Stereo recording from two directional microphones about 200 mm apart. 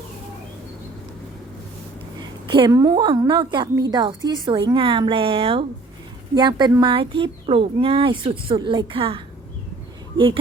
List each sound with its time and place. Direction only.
2.5 s a woman's voice: 20° right (ahead or behind)